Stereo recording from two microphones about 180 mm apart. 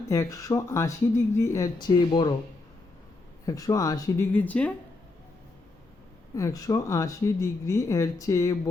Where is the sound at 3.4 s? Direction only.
20° left (ahead or behind).